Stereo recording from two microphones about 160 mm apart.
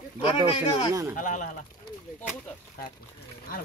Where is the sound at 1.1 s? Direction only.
55° left (ahead or behind).